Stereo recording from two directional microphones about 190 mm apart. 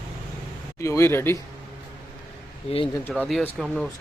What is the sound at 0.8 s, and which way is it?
Speech, 15° left (ahead or behind).